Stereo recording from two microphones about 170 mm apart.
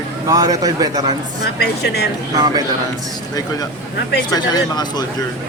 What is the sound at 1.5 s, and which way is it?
Speech, 75° left (ahead or behind).